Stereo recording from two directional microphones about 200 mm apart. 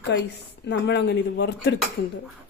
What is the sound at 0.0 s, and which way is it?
Speech, 60° left (ahead or behind).